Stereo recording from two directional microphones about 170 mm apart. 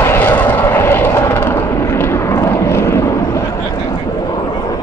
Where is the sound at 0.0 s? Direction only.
15° left (ahead or behind).